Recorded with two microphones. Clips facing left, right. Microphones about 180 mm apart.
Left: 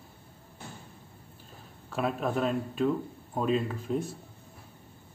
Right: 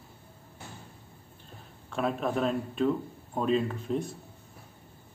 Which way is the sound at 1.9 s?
Centre (ahead or behind).